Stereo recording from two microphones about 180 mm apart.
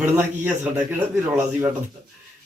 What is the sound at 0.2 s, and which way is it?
Speech, 10° right (ahead or behind).